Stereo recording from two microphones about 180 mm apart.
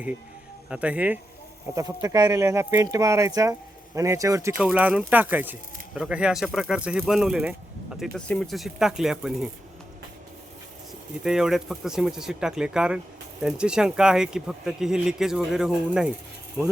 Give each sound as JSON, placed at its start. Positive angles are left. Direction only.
{"t": 0.7, "sound": "speech", "side_deg": -5}
{"t": 4.5, "sound": "speech", "side_deg": -5}
{"t": 11.2, "sound": "speech", "side_deg": -5}